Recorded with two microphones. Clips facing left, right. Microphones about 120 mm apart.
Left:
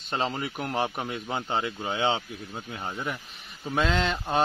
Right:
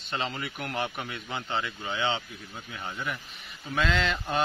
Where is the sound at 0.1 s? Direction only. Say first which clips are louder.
Left 4 dB; 40° left (ahead or behind).